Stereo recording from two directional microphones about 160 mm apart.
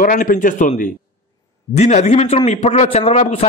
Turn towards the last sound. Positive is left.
turn(degrees=45)  # may be behind; listen again after turning